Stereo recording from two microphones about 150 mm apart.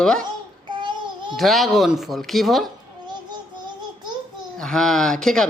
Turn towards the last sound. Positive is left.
turn(degrees=5)  # may be behind; listen again after turning